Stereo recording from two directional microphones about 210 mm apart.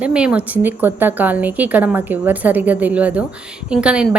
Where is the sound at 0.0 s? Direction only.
5° right (ahead or behind).